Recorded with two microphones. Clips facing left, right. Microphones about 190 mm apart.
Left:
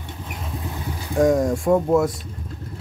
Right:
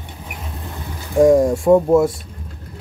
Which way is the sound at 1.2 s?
25° right (ahead or behind).